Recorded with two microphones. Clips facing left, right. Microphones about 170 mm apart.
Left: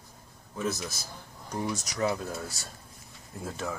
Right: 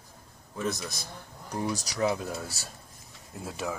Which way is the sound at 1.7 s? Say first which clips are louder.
Right 1 dB; 35° right (ahead or behind).